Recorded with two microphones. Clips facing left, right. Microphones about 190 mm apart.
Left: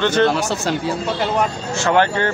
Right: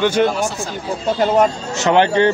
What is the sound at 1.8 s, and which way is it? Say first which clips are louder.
Speech: right 4 dB; 20° right (ahead or behind).